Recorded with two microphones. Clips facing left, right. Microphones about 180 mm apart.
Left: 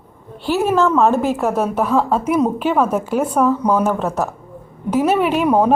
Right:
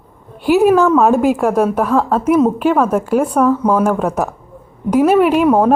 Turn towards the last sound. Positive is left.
turn(degrees=-5)  # may be behind; listen again after turning